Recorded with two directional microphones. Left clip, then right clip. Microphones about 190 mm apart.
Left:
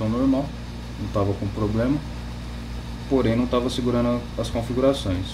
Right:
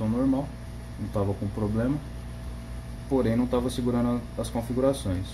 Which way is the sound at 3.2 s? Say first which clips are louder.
Left 4 dB; 45° right (ahead or behind).